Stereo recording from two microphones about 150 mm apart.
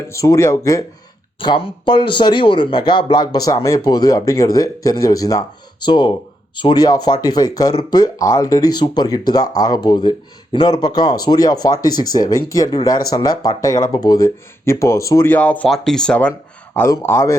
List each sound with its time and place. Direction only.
0.1 s speech: 20° left (ahead or behind)
1.4 s a man's voice: 35° left (ahead or behind); by 16.3 s 5° left (ahead or behind)
16.7 s speech: 20° left (ahead or behind)